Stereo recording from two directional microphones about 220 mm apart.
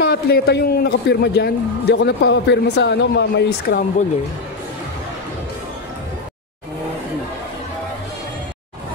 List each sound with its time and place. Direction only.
0.1 s a man's voice: 45° left (ahead or behind)